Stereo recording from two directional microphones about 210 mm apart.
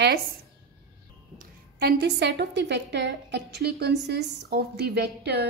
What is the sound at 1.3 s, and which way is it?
A woman's voice, 50° right (ahead or behind).